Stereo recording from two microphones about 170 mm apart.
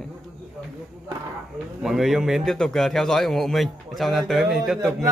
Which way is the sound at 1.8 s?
Centre (ahead or behind).